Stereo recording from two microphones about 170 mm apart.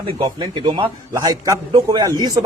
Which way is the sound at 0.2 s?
25° right (ahead or behind).